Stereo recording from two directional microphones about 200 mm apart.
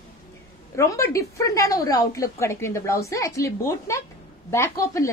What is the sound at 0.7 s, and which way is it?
A woman's voice, 15° left (ahead or behind).